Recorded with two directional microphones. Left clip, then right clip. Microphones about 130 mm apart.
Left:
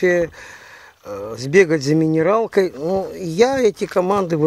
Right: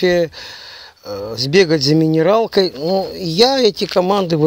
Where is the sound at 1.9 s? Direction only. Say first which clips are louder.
Right 2 dB; 45° right (ahead or behind).